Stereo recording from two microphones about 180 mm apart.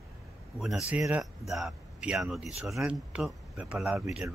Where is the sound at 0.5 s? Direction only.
Centre (ahead or behind).